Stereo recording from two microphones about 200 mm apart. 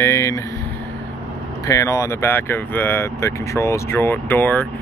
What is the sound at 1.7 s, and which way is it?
Speech, 15° left (ahead or behind).